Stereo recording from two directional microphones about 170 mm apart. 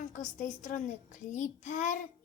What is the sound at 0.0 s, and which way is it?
A child's voice, 45° left (ahead or behind).